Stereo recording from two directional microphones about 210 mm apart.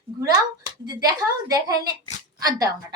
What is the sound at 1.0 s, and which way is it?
A woman's voice, 15° right (ahead or behind).